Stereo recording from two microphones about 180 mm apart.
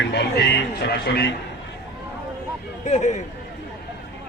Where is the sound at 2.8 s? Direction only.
40° left (ahead or behind).